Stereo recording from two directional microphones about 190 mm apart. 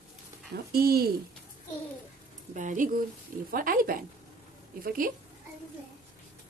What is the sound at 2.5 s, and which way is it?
Speech, 40° right (ahead or behind).